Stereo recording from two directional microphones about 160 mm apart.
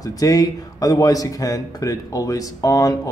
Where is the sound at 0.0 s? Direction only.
20° left (ahead or behind).